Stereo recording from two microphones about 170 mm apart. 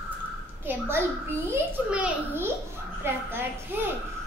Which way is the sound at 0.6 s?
15° right (ahead or behind).